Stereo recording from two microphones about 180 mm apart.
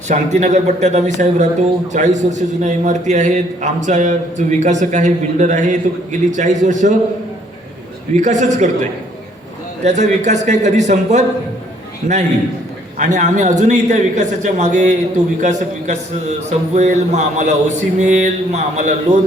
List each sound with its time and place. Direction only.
0.1 s a man's voice: 40° right (ahead or behind)
8.1 s a man's voice: 40° right (ahead or behind)
9.8 s a man's voice: 40° right (ahead or behind)
13.0 s a man's voice: 40° right (ahead or behind)